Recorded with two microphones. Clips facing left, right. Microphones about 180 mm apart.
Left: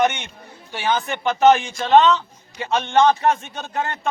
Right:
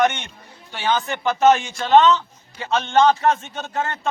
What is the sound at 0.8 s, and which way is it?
A man's voice, 15° left (ahead or behind).